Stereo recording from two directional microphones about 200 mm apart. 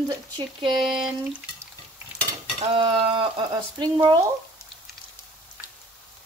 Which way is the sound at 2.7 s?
25° right (ahead or behind).